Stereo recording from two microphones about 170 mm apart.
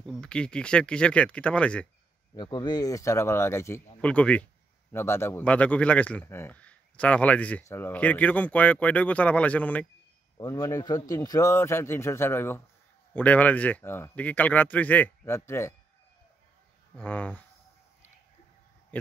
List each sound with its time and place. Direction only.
0.0 s speech: 5° left (ahead or behind)
2.3 s a man's voice: 25° left (ahead or behind); by 9.8 s 10° left (ahead or behind)
10.3 s a man's voice: 20° left (ahead or behind)
16.9 s a man's voice: 10° left (ahead or behind)